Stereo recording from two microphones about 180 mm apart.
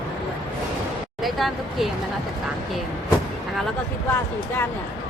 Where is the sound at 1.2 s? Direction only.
Centre (ahead or behind).